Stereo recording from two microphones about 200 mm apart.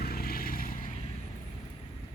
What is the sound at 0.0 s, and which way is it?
Vehicle, 50° left (ahead or behind).